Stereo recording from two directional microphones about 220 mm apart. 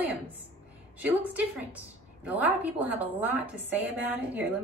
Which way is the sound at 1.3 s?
5° right (ahead or behind).